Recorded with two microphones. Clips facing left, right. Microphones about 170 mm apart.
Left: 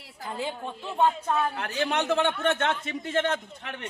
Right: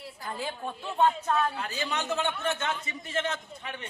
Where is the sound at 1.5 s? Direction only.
65° left (ahead or behind).